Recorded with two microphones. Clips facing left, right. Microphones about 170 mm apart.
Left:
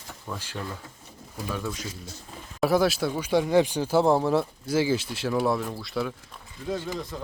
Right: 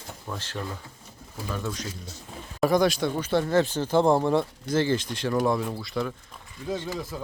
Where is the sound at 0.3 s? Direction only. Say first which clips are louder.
Even; 5° right (ahead or behind).